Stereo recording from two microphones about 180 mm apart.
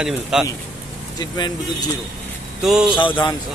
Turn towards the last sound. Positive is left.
turn(degrees=25)  # may be behind; listen again after turning